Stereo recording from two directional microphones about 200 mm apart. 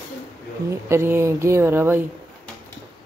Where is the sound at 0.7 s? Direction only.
15° right (ahead or behind).